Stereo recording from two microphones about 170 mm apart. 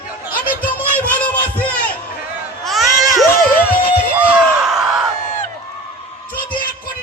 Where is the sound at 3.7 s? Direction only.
60° left (ahead or behind).